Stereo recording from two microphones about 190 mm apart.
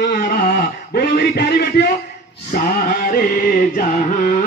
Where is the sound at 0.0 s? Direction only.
55° left (ahead or behind).